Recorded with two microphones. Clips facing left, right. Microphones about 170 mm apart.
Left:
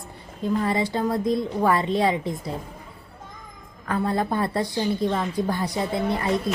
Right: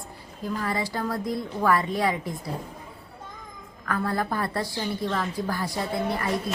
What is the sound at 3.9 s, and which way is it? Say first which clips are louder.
A woman's voice: left 3 dB; 25° left (ahead or behind).